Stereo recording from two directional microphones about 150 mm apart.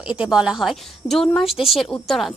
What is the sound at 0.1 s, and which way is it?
A woman's voice, 5° right (ahead or behind).